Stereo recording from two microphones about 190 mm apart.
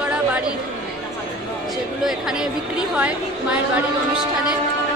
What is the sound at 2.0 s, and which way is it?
A woman's voice, 5° right (ahead or behind).